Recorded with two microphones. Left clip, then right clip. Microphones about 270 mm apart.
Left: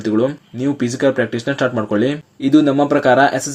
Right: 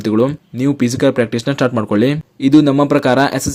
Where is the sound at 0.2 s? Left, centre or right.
Right.